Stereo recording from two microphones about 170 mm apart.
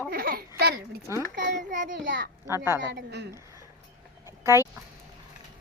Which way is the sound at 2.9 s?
90° right.